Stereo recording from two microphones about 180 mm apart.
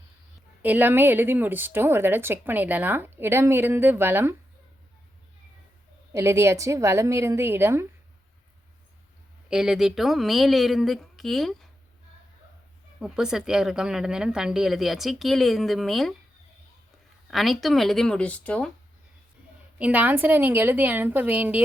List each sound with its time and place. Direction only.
0.6 s a woman's voice: 10° right (ahead or behind)
6.1 s a woman's voice: 15° right (ahead or behind)
9.5 s a woman's voice: 5° right (ahead or behind)
13.0 s a woman's voice: 5° right (ahead or behind)
17.3 s a woman's voice: centre (ahead or behind)
19.8 s a woman's voice: 10° right (ahead or behind)